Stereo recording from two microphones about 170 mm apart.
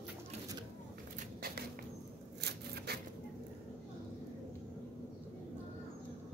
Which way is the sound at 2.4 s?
70° right (ahead or behind).